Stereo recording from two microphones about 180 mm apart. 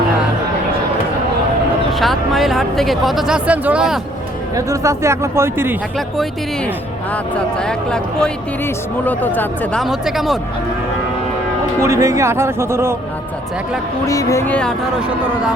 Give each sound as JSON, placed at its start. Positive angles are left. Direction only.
{"t": 1.9, "sound": "speech", "side_deg": 0}
{"t": 4.5, "sound": "speech", "side_deg": -15}
{"t": 7.3, "sound": "speech", "side_deg": 5}
{"t": 9.8, "sound": "speech", "side_deg": 0}
{"t": 11.8, "sound": "speech", "side_deg": -15}
{"t": 14.1, "sound": "speech", "side_deg": 15}